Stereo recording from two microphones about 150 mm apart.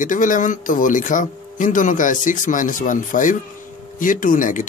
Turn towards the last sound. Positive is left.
turn(degrees=60)  # may be behind; listen again after turning